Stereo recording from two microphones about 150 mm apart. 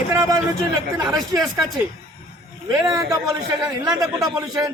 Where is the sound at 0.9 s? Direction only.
20° right (ahead or behind).